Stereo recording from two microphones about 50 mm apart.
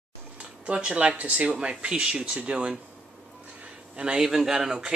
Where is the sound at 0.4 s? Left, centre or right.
Right.